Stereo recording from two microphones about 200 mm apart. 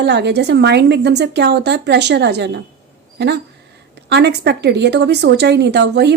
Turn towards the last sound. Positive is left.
turn(degrees=-55)  # may be behind; listen again after turning